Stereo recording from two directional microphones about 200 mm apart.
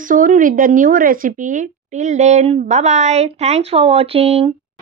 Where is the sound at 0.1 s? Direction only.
40° right (ahead or behind).